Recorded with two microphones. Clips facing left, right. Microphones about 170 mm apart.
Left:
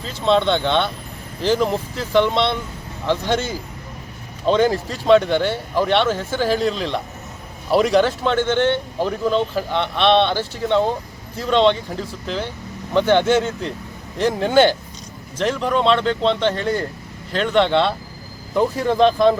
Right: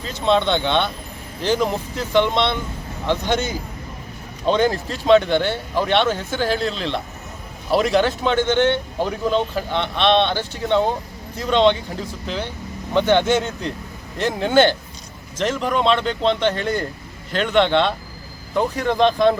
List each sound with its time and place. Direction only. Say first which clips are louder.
0.0 s a man's voice: left 1 dB; centre (ahead or behind)
4.4 s a man's voice: left 2 dB; 5° left (ahead or behind)
15.4 s a man's voice: left 1 dB; 5° right (ahead or behind)